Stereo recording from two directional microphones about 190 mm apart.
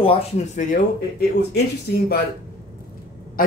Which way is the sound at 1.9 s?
55° left (ahead or behind).